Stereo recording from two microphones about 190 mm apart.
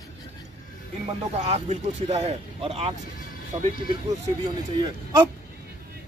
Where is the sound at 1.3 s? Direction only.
35° right (ahead or behind).